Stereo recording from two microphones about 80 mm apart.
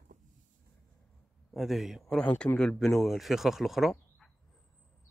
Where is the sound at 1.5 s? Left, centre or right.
Centre.